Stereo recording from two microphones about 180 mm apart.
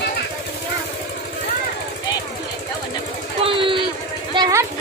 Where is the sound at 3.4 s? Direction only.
30° right (ahead or behind).